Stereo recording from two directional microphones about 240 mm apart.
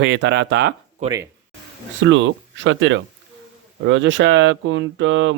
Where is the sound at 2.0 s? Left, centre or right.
Right.